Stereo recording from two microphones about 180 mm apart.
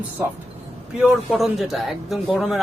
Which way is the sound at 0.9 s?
Centre (ahead or behind).